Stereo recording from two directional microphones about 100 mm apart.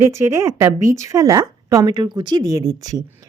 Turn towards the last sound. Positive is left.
turn(degrees=-35)  # may be behind; listen again after turning